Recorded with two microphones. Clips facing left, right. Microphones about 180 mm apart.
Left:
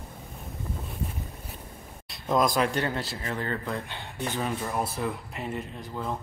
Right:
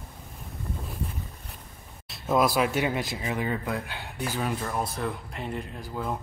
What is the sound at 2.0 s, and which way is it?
Speech, 5° right (ahead or behind).